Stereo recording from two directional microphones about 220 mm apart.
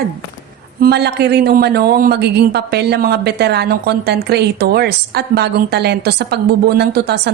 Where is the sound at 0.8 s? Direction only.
50° right (ahead or behind).